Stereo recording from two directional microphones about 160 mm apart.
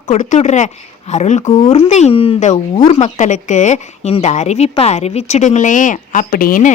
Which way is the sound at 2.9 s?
45° left (ahead or behind).